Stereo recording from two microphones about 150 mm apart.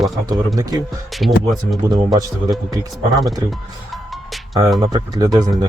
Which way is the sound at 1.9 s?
25° right (ahead or behind).